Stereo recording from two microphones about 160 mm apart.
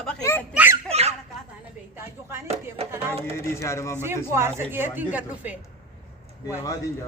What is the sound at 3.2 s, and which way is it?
Music, 15° left (ahead or behind).